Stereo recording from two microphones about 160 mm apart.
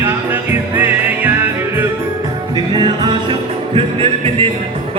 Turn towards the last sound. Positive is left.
turn(degrees=-35)  # may be behind; listen again after turning